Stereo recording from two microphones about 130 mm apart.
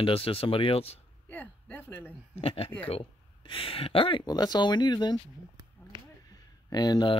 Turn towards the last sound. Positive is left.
turn(degrees=35)  # may be behind; listen again after turning